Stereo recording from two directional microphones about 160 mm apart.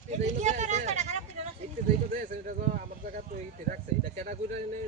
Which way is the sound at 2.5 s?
60° right (ahead or behind).